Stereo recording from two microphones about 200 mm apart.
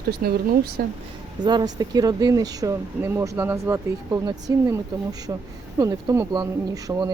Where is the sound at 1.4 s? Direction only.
20° right (ahead or behind).